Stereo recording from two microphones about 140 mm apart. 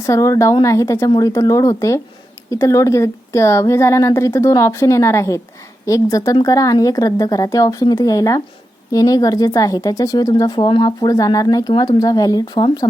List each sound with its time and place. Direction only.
0.0 s speech: 20° left (ahead or behind)